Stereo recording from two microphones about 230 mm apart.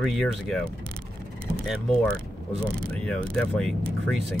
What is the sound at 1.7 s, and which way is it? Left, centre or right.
Speech, centre.